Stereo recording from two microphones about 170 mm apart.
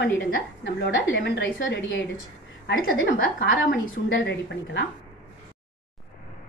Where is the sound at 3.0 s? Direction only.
55° left (ahead or behind).